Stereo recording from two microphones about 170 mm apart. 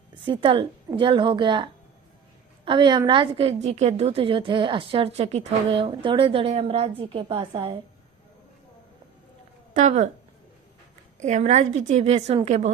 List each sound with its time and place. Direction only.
0.1 s a woman's voice: 30° right (ahead or behind)
9.7 s speech: 45° right (ahead or behind)
11.2 s a woman's voice: 45° right (ahead or behind)